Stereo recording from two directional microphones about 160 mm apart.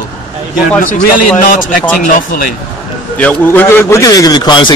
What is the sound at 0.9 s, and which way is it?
Speech, 55° left (ahead or behind).